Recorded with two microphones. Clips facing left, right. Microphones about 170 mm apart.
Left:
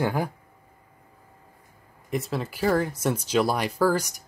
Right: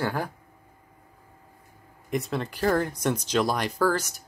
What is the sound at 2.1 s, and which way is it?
Speech, centre (ahead or behind).